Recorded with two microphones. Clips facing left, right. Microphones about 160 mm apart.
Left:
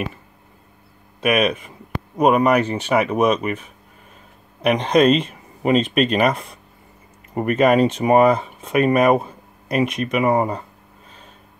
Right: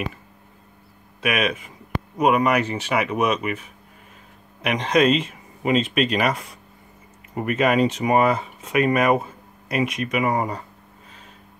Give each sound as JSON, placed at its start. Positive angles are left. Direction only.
{"t": 1.2, "sound": "speech", "side_deg": 35}
{"t": 4.6, "sound": "speech", "side_deg": 30}
{"t": 5.2, "sound": "a sound", "side_deg": 45}
{"t": 5.9, "sound": "speech", "side_deg": 45}
{"t": 7.3, "sound": "speech", "side_deg": 40}